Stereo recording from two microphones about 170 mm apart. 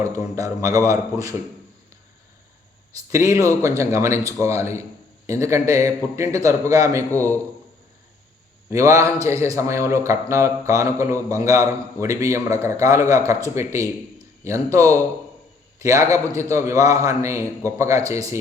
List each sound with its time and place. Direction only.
0.0 s a man's voice: 15° right (ahead or behind)
3.1 s a man's voice: 15° right (ahead or behind)
8.7 s a man's voice: 20° right (ahead or behind)